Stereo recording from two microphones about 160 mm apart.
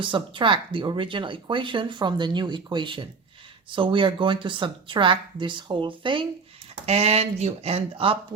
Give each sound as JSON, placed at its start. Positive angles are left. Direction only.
{"t": 0.0, "sound": "speech", "side_deg": -30}